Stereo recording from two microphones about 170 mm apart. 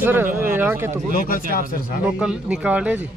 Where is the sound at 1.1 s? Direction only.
55° left (ahead or behind).